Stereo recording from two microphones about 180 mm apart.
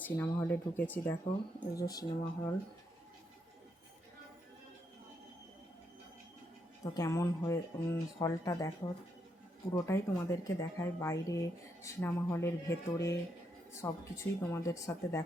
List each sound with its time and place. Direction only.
0.0 s speech: 10° left (ahead or behind)
6.8 s speech: 20° left (ahead or behind)